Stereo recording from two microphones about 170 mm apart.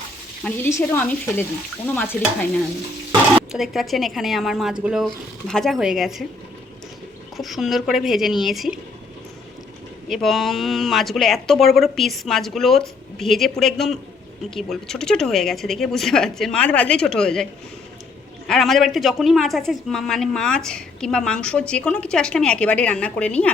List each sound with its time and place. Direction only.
0.4 s speech: 10° left (ahead or behind)
2.2 s stir: 60° left (ahead or behind)
3.5 s speech: centre (ahead or behind)
7.3 s speech: centre (ahead or behind)
10.1 s speech: centre (ahead or behind)